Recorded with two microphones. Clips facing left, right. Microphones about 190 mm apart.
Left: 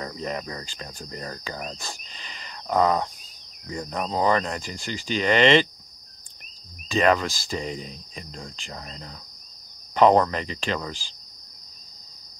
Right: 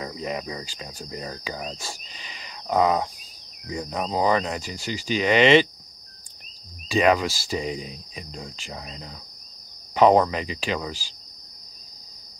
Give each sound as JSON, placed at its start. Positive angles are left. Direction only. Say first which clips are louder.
{"t": 0.0, "sound": "speech", "louder": "right 1 dB", "side_deg": -5}
{"t": 1.7, "sound": "a sound", "louder": "right 1 dB", "side_deg": -5}
{"t": 3.6, "sound": "speech", "louder": "right 1 dB", "side_deg": -5}
{"t": 6.9, "sound": "speech", "louder": "right 1 dB", "side_deg": -5}